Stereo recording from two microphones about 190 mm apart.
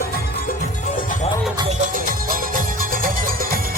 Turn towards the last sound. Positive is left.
turn(degrees=-50)  # may be behind; listen again after turning